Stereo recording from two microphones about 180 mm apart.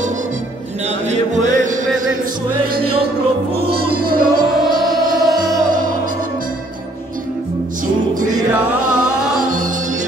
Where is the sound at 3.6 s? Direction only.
60° right (ahead or behind).